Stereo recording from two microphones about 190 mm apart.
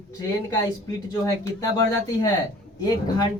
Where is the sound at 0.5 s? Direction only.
20° left (ahead or behind).